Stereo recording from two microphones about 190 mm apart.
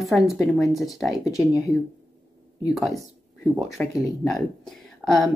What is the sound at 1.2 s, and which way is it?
Speech, 20° left (ahead or behind).